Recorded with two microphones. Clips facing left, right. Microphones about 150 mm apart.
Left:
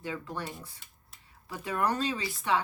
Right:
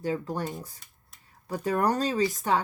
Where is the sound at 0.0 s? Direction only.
40° right (ahead or behind).